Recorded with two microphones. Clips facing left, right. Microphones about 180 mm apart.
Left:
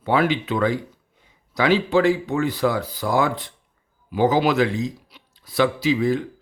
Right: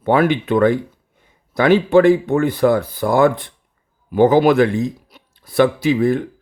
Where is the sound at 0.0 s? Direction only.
55° right (ahead or behind).